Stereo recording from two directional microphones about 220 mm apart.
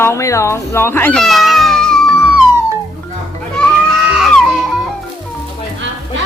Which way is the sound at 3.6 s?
Centre (ahead or behind).